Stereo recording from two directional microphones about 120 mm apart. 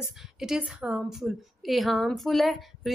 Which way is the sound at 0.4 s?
5° right (ahead or behind).